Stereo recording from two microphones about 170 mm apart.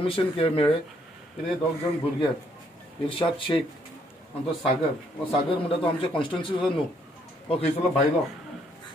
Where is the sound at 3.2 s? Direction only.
30° left (ahead or behind).